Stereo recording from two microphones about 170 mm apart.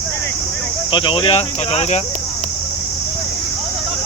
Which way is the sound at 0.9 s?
30° left (ahead or behind).